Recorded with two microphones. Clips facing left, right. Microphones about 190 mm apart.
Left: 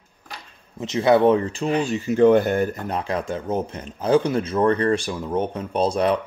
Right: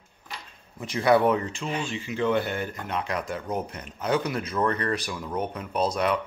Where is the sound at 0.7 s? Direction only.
25° left (ahead or behind).